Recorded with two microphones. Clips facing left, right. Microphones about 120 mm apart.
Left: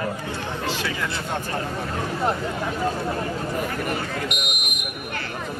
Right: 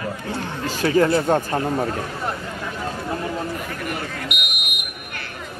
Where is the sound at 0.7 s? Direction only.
45° right (ahead or behind).